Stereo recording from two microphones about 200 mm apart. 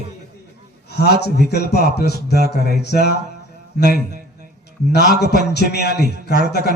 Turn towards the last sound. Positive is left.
turn(degrees=55)  # may be behind; listen again after turning